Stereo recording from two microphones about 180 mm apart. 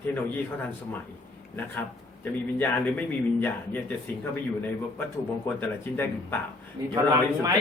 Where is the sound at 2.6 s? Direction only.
10° left (ahead or behind).